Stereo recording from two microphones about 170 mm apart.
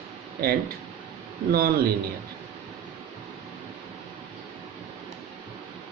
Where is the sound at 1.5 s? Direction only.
65° right (ahead or behind).